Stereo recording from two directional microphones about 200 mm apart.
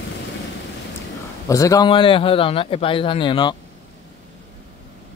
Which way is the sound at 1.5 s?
15° left (ahead or behind).